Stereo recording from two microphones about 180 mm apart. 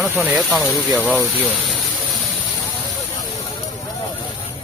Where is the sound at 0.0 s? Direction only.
5° right (ahead or behind).